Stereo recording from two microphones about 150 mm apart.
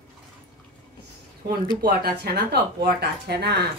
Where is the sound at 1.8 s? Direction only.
90° right.